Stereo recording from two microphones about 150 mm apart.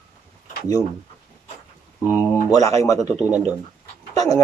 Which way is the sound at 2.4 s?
20° left (ahead or behind).